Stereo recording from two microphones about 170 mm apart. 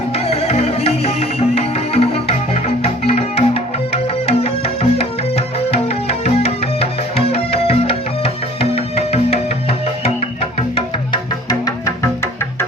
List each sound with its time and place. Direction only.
0.3 s music: 40° left (ahead or behind)
10.8 s music: 25° left (ahead or behind)